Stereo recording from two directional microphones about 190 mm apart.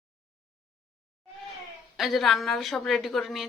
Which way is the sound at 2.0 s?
Centre (ahead or behind).